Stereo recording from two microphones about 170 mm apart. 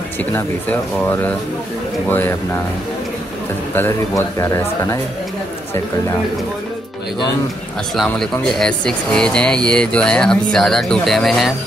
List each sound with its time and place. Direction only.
0.2 s speech: 10° left (ahead or behind)
3.7 s speech: 15° left (ahead or behind)
7.9 s speech: centre (ahead or behind)